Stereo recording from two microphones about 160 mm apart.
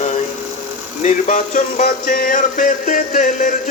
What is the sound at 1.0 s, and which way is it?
Music, 50° left (ahead or behind).